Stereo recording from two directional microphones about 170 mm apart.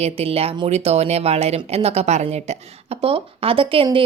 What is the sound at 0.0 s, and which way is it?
Speech, 35° right (ahead or behind).